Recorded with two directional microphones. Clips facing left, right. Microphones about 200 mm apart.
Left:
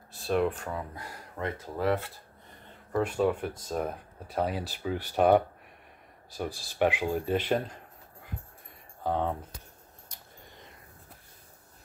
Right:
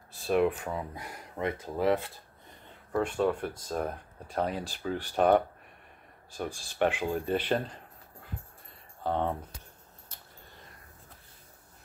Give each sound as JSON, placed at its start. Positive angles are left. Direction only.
{"t": 0.3, "sound": "speech", "side_deg": -5}
{"t": 0.9, "sound": "speech", "side_deg": -15}
{"t": 2.9, "sound": "speech", "side_deg": 5}
{"t": 9.0, "sound": "speech", "side_deg": 0}